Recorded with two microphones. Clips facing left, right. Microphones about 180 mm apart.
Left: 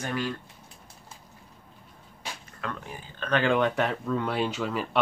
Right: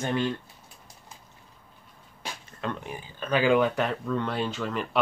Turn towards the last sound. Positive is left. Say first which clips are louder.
# left 1 dB
turn(degrees=5)  # may be behind; listen again after turning